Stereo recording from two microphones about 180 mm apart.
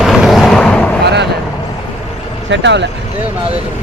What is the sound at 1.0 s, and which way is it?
Vehicle, 70° right (ahead or behind).